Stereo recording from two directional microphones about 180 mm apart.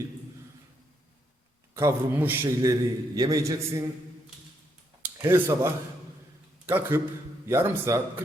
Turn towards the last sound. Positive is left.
turn(degrees=-15)  # may be behind; listen again after turning